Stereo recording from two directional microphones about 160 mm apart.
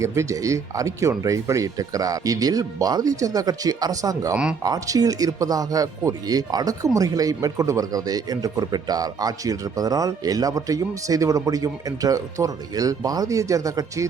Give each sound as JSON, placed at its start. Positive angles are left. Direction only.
{"t": 0.0, "sound": "speech", "side_deg": -20}